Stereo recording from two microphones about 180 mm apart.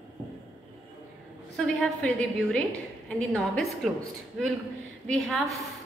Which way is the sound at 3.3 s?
Centre (ahead or behind).